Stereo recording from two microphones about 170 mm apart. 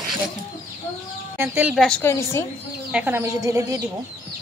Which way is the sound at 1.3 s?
10° right (ahead or behind).